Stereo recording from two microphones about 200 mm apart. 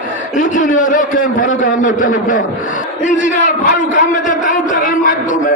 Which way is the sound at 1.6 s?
40° left (ahead or behind).